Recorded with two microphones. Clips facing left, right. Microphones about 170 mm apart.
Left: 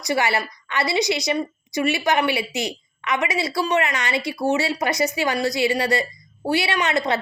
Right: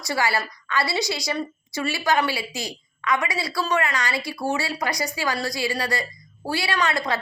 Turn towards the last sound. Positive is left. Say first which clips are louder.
# left 2 dB
turn(degrees=25)  # may be behind; listen again after turning